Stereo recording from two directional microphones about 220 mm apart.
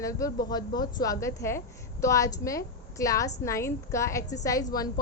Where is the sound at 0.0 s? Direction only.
15° left (ahead or behind).